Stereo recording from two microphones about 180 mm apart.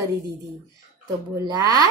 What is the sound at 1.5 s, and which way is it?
Speech, 20° right (ahead or behind).